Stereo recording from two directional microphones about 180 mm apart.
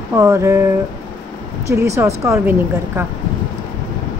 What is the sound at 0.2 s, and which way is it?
Speech, 15° right (ahead or behind).